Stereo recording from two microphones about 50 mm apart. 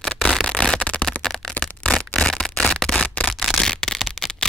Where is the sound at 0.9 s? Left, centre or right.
Left.